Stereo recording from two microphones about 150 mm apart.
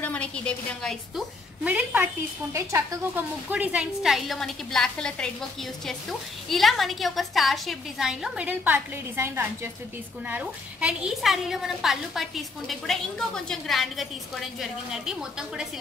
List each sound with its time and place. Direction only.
0.0 s a woman's voice: 10° left (ahead or behind)
1.6 s a woman's voice: 10° right (ahead or behind)